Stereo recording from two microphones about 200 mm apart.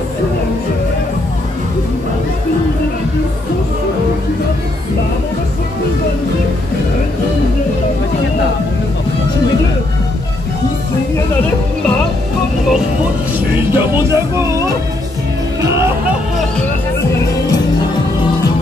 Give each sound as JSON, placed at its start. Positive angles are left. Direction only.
{"t": 13.5, "sound": "music", "side_deg": -10}